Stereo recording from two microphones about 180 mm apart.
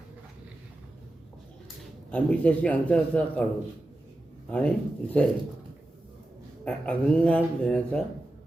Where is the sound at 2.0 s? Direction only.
5° left (ahead or behind).